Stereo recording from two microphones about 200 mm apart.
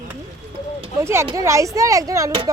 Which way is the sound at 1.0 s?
15° right (ahead or behind).